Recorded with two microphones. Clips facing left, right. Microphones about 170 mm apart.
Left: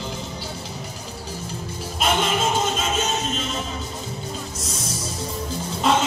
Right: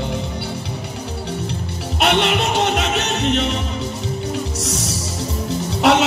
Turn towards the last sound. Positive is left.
turn(degrees=-75)  # may be behind; listen again after turning